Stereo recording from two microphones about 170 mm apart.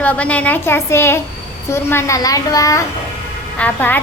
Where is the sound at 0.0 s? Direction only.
10° left (ahead or behind).